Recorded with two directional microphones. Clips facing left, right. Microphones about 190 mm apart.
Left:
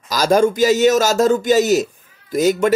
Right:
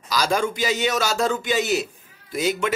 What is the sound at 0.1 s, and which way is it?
A man's voice, 45° left (ahead or behind).